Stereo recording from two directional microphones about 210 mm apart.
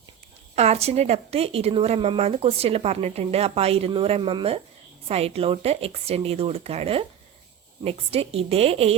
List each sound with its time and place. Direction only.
0.5 s speech: 30° right (ahead or behind)